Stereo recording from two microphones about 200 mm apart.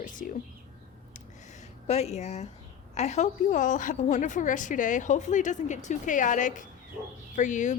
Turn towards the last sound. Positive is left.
turn(degrees=40)  # may be behind; listen again after turning